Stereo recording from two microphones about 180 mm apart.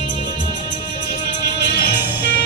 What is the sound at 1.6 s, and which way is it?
Music, 75° left (ahead or behind).